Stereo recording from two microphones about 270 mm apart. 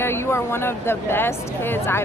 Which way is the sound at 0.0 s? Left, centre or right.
Centre.